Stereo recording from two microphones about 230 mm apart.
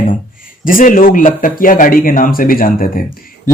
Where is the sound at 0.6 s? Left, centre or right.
Left.